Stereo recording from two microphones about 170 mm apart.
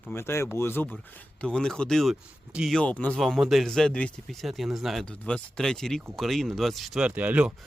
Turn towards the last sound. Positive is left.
turn(degrees=-10)  # may be behind; listen again after turning